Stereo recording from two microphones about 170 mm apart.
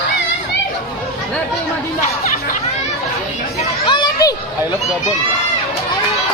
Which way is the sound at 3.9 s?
20° left (ahead or behind).